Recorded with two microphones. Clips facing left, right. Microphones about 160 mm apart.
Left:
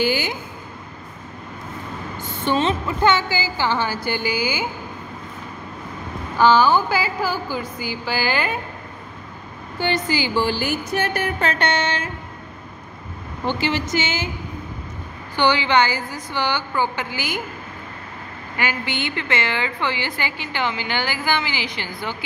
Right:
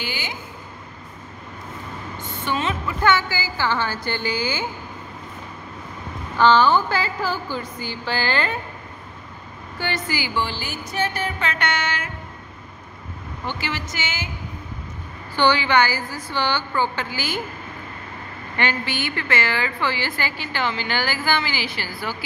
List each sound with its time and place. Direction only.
0.0 s a sound: 40° left (ahead or behind)
2.4 s speech: 30° left (ahead or behind); by 4.6 s 10° left (ahead or behind)
6.3 s speech: 10° left (ahead or behind)
9.8 s a woman's voice: 20° left (ahead or behind)
10.6 s music: 55° left (ahead or behind)
11.4 s a woman's voice: 30° left (ahead or behind)
13.5 s a woman's voice: 20° left (ahead or behind)
15.3 s speech: 15° left (ahead or behind)
18.6 s a woman's voice: 10° left (ahead or behind)